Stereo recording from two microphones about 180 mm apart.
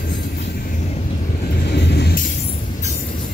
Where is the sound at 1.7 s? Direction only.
65° left (ahead or behind).